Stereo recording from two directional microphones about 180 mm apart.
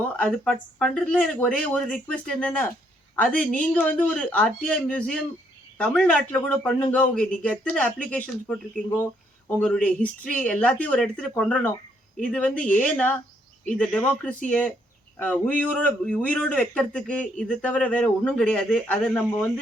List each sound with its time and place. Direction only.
0.0 s a man's voice: 5° left (ahead or behind)